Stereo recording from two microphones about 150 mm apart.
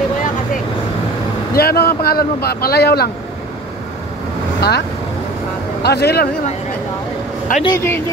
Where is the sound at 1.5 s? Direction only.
90° left.